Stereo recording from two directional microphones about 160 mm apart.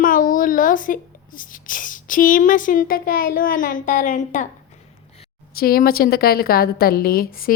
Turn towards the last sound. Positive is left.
turn(degrees=65)  # may be behind; listen again after turning